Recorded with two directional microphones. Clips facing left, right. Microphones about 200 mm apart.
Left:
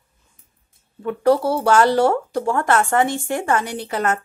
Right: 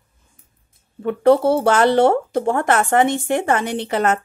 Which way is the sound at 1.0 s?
25° right (ahead or behind).